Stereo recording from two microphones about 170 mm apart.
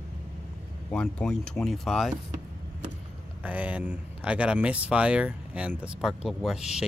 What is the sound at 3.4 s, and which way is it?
Speech, 10° right (ahead or behind).